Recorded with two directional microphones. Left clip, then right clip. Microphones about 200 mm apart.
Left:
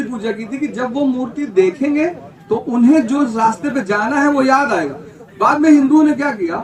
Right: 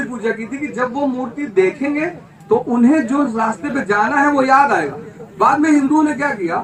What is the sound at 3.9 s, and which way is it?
Speech, 50° left (ahead or behind).